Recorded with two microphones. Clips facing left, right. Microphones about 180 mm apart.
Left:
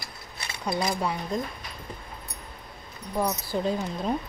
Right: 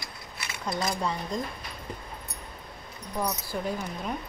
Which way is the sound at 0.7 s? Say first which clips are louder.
Left 2 dB; 10° left (ahead or behind).